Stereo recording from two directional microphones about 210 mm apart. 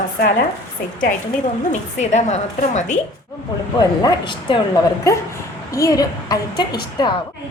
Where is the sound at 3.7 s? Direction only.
20° left (ahead or behind).